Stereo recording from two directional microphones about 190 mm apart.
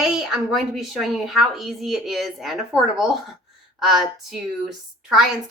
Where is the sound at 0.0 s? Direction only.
5° right (ahead or behind).